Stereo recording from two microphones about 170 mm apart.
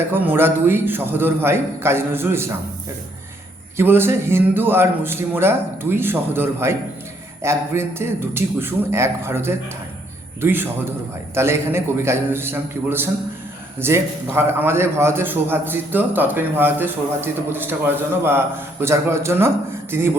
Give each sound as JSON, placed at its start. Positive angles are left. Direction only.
{"t": 0.0, "sound": "a man's voice", "side_deg": -10}
{"t": 3.8, "sound": "a man's voice", "side_deg": -15}